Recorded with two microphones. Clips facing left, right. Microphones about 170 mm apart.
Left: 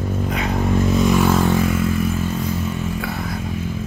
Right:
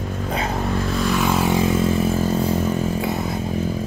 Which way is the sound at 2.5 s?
40° right (ahead or behind).